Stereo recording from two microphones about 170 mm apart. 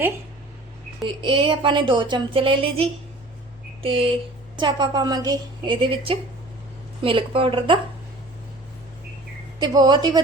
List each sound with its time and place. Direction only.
1.0 s a woman's voice: 30° right (ahead or behind)
9.6 s a woman's voice: 25° right (ahead or behind)